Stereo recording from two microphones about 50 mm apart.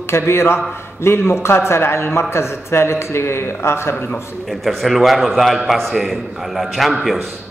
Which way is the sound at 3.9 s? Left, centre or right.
Left.